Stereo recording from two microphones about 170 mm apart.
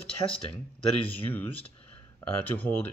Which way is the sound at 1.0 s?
10° left (ahead or behind).